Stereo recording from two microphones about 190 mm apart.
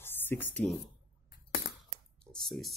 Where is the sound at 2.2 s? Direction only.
Centre (ahead or behind).